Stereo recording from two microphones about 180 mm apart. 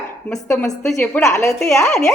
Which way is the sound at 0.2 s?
5° left (ahead or behind).